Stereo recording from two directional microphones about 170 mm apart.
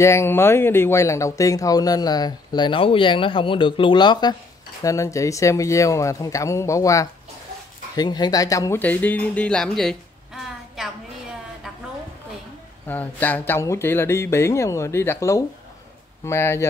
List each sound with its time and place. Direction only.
0.0 s speech: 15° left (ahead or behind)
12.8 s speech: 10° left (ahead or behind)